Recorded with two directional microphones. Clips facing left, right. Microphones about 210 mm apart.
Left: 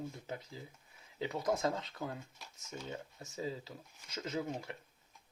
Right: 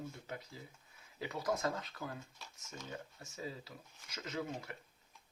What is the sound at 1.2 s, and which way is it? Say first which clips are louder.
Speech: left 3 dB; 25° left (ahead or behind).